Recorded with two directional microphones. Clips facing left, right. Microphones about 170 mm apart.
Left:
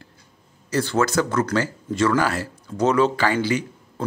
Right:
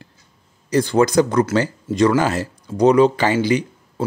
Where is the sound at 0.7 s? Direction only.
15° right (ahead or behind).